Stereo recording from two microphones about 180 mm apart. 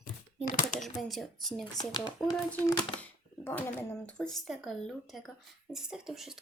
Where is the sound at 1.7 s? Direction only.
25° left (ahead or behind).